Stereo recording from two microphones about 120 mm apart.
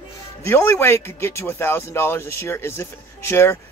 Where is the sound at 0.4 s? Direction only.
20° left (ahead or behind).